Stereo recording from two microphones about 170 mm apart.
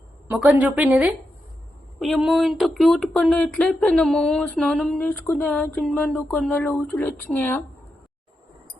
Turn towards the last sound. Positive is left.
turn(degrees=10)  # may be behind; listen again after turning